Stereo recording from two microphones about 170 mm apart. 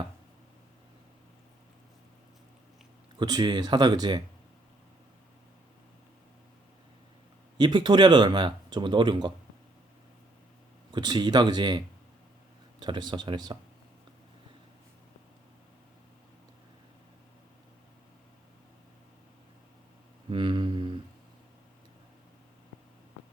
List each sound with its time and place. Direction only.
3.2 s speech: 25° right (ahead or behind)
7.6 s speech: 25° right (ahead or behind)
10.9 s speech: 25° right (ahead or behind)
12.8 s speech: 25° right (ahead or behind)
20.3 s a sound: 25° right (ahead or behind)